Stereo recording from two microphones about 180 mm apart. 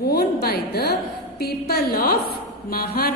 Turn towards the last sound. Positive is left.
turn(degrees=60)  # may be behind; listen again after turning